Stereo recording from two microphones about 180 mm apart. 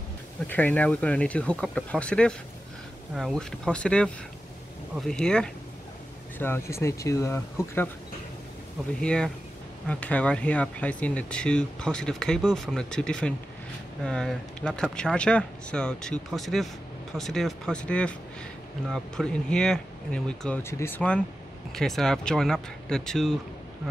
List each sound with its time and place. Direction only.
0.5 s speech: 10° left (ahead or behind)
9.0 s speech: 5° left (ahead or behind)